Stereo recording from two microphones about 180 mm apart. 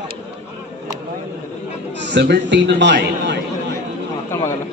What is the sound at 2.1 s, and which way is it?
A man's voice, 75° right (ahead or behind).